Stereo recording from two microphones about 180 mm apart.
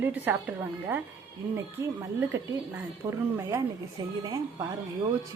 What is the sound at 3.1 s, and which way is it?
A woman's voice, 15° right (ahead or behind).